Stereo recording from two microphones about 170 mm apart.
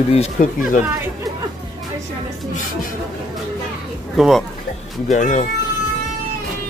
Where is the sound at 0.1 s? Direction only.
45° left (ahead or behind).